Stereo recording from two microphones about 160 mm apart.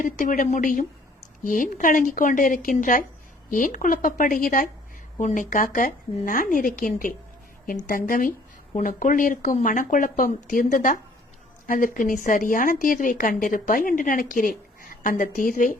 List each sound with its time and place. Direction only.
0.0 s a woman's voice: 55° left (ahead or behind)